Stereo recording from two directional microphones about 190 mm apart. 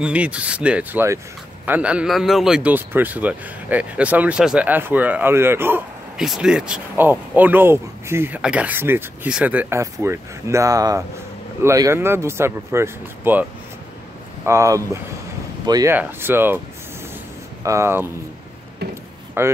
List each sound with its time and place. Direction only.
0.0 s a man's voice: 5° right (ahead or behind)
17.6 s a man's voice: 15° right (ahead or behind)
19.4 s a man's voice: 10° right (ahead or behind)